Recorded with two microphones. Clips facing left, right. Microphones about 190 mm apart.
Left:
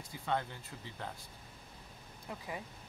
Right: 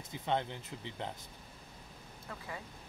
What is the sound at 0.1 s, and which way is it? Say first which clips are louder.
Speech: right 2 dB; 20° right (ahead or behind).